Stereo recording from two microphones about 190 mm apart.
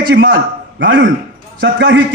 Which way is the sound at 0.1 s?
65° right (ahead or behind).